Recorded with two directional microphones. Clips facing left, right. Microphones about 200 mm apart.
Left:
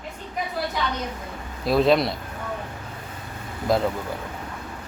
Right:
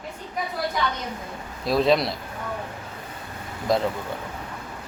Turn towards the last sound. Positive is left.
turn(degrees=0)  # may be behind; listen again after turning